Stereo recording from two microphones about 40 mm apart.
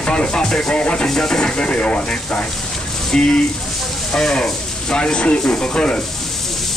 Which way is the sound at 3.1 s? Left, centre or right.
Centre.